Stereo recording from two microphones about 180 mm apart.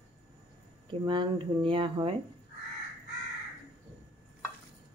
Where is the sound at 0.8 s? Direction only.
25° right (ahead or behind).